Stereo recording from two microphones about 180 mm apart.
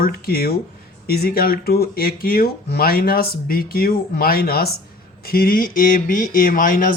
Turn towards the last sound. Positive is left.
turn(degrees=50)  # may be behind; listen again after turning